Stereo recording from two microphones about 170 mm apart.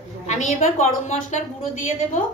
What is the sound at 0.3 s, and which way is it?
A woman's voice, 45° left (ahead or behind).